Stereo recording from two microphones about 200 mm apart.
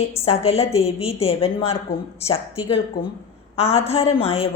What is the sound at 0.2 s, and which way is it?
A woman's voice, 30° left (ahead or behind).